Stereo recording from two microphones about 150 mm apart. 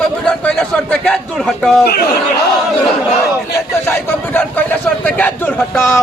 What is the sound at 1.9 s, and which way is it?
Speech, 90° left.